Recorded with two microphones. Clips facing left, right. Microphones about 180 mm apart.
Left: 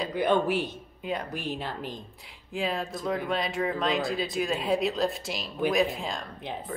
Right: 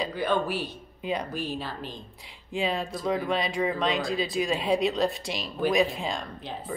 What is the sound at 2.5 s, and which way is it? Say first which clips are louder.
Speech: right 2 dB; centre (ahead or behind).